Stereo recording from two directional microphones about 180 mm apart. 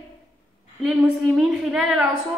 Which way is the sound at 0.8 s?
Centre (ahead or behind).